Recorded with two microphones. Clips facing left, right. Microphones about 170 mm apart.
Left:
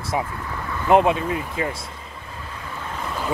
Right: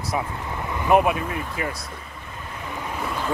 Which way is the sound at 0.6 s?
20° right (ahead or behind).